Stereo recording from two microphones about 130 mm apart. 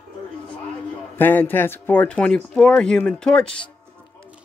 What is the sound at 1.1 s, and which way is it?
A man's voice, 15° left (ahead or behind).